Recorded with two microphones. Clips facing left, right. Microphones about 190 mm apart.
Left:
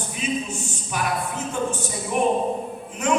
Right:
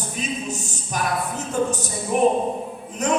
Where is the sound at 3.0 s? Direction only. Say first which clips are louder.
Even; 40° right (ahead or behind).